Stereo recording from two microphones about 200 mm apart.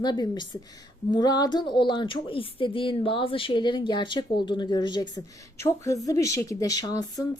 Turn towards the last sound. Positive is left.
turn(degrees=20)  # may be behind; listen again after turning